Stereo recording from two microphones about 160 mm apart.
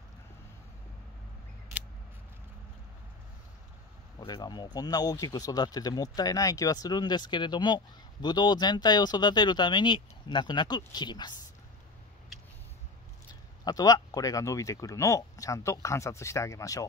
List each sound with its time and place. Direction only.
4.2 s speech: 25° left (ahead or behind)
13.3 s speech: 25° left (ahead or behind)